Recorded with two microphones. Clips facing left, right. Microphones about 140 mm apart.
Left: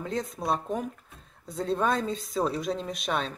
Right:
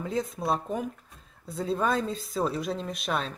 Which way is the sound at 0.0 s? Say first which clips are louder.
Right 1 dB; centre (ahead or behind).